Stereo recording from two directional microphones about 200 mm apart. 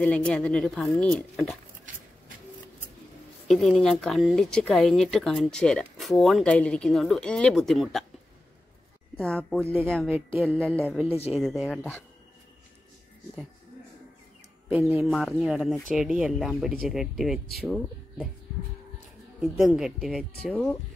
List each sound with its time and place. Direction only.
0.0 s speech: 5° left (ahead or behind)
3.4 s speech: centre (ahead or behind)
9.1 s speech: 5° left (ahead or behind)
10.0 s speech: 10° right (ahead or behind)
11.1 s speech: 30° left (ahead or behind)
11.3 s speech: centre (ahead or behind)
14.7 s speech: 10° right (ahead or behind)
15.0 s speech: 5° left (ahead or behind)
19.4 s speech: 5° right (ahead or behind)